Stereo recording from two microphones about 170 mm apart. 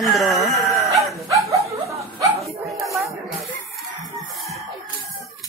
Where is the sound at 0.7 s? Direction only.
20° right (ahead or behind).